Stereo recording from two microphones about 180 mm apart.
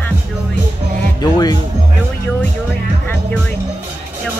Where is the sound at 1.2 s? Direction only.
20° left (ahead or behind).